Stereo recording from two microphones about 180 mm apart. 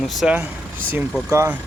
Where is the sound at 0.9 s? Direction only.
15° right (ahead or behind).